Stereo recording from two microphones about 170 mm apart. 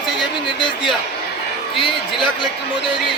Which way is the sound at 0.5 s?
30° left (ahead or behind).